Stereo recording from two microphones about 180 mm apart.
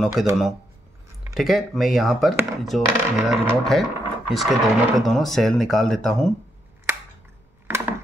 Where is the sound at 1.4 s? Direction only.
Centre (ahead or behind).